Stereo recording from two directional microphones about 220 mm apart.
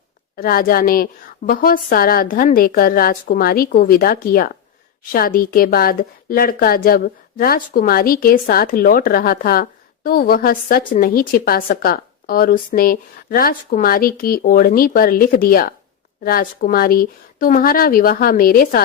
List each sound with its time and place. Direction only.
0.3 s a woman's voice: 40° left (ahead or behind)